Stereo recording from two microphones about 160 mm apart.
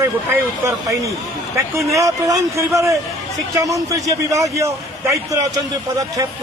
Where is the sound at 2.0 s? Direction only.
20° right (ahead or behind).